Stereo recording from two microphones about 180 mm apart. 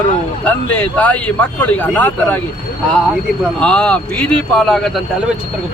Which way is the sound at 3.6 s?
5° left (ahead or behind).